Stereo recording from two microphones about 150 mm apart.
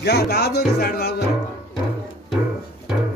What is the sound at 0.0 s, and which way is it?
Speech, 90° left.